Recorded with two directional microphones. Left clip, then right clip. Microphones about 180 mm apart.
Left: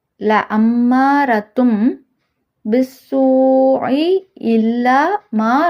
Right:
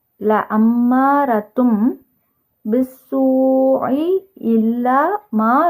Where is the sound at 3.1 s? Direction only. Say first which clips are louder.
Left 3 dB; centre (ahead or behind); by 5.4 s 15° left (ahead or behind).